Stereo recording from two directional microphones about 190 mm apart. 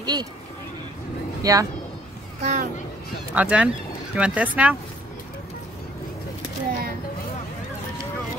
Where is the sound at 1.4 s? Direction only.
15° right (ahead or behind).